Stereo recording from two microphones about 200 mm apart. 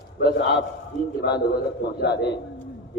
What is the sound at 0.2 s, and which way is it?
Speech, 55° left (ahead or behind).